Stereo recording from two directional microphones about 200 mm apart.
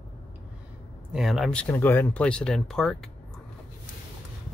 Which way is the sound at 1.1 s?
Centre (ahead or behind).